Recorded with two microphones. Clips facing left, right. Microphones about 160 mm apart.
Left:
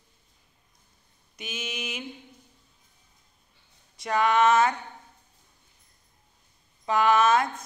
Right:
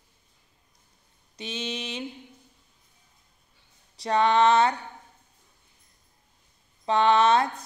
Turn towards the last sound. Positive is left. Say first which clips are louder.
# right 1 dB
turn(degrees=-30)  # may be behind; listen again after turning